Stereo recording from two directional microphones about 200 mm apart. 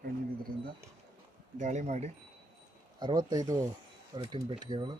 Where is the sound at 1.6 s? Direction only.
35° right (ahead or behind).